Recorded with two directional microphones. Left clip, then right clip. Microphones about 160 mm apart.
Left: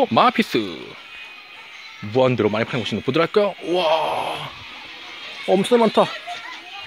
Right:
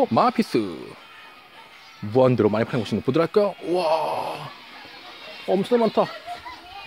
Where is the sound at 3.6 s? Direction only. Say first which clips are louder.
Left 3 dB; centre (ahead or behind).